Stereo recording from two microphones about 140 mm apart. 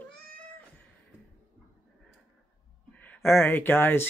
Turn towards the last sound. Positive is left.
turn(degrees=15)  # may be behind; listen again after turning